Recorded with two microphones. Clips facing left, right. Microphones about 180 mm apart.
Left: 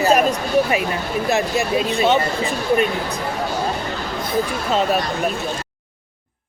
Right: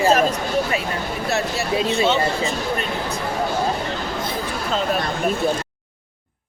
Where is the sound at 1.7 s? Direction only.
25° right (ahead or behind).